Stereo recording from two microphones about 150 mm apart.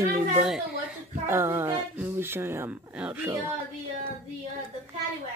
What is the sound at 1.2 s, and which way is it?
Speech, 15° right (ahead or behind).